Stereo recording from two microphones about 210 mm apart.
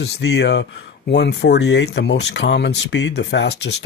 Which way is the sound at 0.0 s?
55° left (ahead or behind).